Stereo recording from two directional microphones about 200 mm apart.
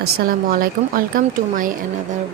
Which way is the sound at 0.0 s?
45° right (ahead or behind).